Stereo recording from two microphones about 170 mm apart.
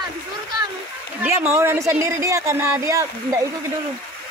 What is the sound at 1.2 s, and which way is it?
Speech, 15° right (ahead or behind).